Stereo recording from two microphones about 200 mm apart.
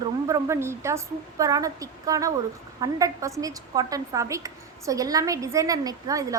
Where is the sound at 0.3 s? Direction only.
15° right (ahead or behind).